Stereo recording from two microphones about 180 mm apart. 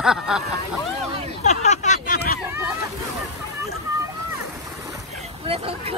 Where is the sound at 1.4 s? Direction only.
40° left (ahead or behind).